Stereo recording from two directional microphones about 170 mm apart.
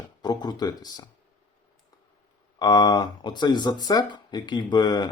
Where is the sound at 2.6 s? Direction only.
25° left (ahead or behind).